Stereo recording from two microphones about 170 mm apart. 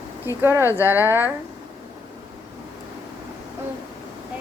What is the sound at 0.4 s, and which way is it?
Speech, 15° right (ahead or behind).